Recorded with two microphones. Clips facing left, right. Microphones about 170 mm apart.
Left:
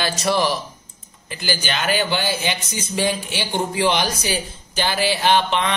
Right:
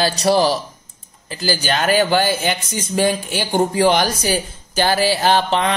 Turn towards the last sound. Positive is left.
turn(degrees=-40)  # may be behind; listen again after turning